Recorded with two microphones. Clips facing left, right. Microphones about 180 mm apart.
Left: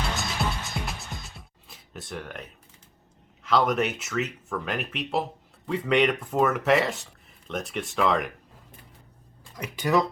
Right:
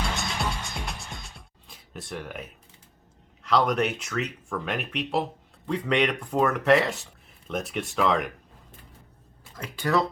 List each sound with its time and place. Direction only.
0.2 s music: centre (ahead or behind)
3.4 s speech: centre (ahead or behind)
9.7 s speech: 15° left (ahead or behind)